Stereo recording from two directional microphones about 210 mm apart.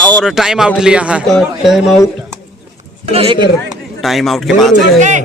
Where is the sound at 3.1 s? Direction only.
25° right (ahead or behind).